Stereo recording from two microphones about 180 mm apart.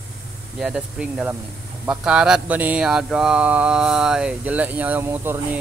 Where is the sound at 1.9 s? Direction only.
5° right (ahead or behind).